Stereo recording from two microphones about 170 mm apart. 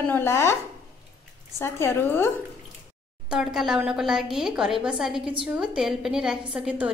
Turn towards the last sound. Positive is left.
turn(degrees=-5)  # may be behind; listen again after turning